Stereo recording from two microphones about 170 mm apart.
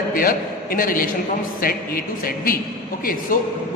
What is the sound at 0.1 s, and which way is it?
A man's voice, 55° left (ahead or behind).